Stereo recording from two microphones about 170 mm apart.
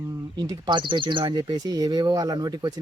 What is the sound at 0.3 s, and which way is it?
Speech, 25° right (ahead or behind).